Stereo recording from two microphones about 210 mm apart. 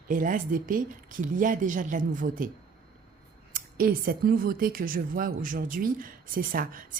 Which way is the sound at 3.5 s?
45° right (ahead or behind).